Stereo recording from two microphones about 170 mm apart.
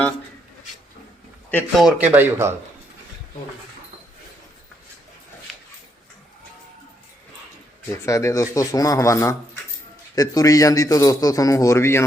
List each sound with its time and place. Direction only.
1.5 s speech: 10° left (ahead or behind)
1.8 s speech: 10° right (ahead or behind)
8.0 s a man's voice: 20° left (ahead or behind)